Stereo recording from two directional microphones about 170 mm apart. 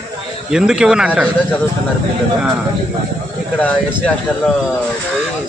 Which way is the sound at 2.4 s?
5° right (ahead or behind).